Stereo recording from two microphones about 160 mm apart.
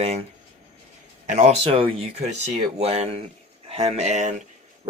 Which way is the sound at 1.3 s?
45° right (ahead or behind).